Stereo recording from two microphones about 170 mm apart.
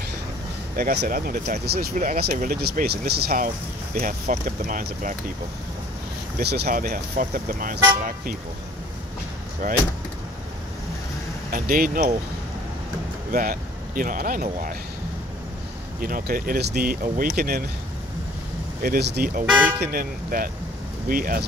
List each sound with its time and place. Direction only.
0.7 s speech: 55° right (ahead or behind)
6.4 s speech: 70° right (ahead or behind); by 8.4 s 55° right (ahead or behind)
9.6 s speech: 55° right (ahead or behind)
11.5 s speech: 60° right (ahead or behind)
13.3 s speech: 55° right (ahead or behind)
16.0 s speech: 55° right (ahead or behind)
18.8 s speech: 65° right (ahead or behind)
19.4 s speech: 10° right (ahead or behind)
19.8 s speech: 60° right (ahead or behind)